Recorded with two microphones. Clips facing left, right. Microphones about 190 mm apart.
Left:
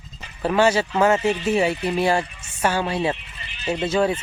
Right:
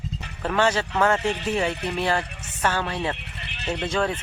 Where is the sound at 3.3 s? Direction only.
65° right (ahead or behind).